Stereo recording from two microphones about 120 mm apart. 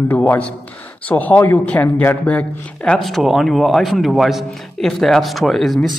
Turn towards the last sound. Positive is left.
turn(degrees=0)  # may be behind; listen again after turning